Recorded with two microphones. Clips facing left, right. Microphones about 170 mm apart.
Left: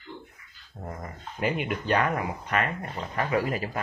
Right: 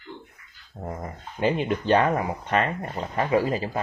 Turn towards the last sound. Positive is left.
turn(degrees=-25)  # may be behind; listen again after turning